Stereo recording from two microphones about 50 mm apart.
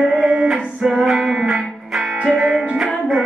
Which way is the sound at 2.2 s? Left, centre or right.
Right.